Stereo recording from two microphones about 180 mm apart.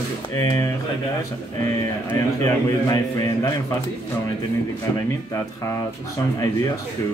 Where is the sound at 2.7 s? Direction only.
20° left (ahead or behind).